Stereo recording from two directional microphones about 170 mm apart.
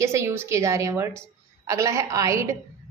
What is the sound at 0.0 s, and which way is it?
A woman's voice, 15° right (ahead or behind).